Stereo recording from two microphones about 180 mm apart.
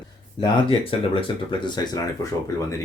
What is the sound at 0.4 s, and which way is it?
Speech, 30° left (ahead or behind).